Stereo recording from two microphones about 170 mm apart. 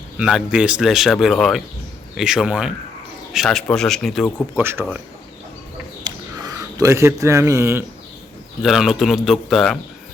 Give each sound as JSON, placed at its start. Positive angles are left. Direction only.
{"t": 0.2, "sound": "speech", "side_deg": -5}
{"t": 4.5, "sound": "speech", "side_deg": -15}
{"t": 6.1, "sound": "a sound", "side_deg": -20}
{"t": 8.6, "sound": "speech", "side_deg": 0}